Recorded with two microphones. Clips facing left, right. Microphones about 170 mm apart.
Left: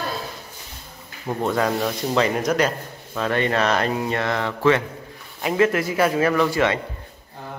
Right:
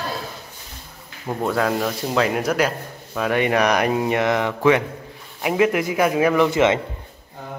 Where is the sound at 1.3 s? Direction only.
5° right (ahead or behind); by 6.8 s 20° right (ahead or behind).